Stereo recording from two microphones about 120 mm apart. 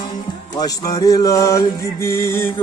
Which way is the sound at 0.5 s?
30° left (ahead or behind).